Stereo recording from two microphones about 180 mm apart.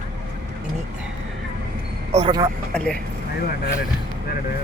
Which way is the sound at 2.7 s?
5° left (ahead or behind).